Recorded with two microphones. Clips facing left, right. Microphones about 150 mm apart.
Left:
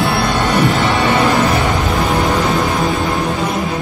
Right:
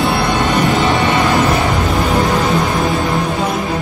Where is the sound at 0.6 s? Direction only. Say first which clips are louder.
Right 1 dB; 20° right (ahead or behind).